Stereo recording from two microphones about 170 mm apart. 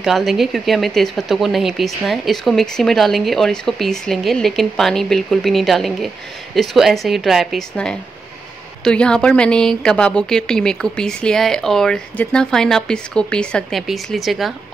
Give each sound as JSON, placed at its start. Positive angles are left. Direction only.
{"t": 0.0, "sound": "speech", "side_deg": 0}